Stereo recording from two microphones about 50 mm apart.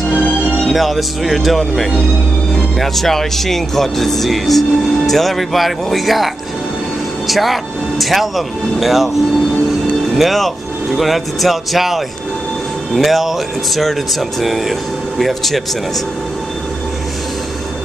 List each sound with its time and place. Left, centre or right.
0.7 s speech: centre
10.1 s speech: centre
14.4 s speech: centre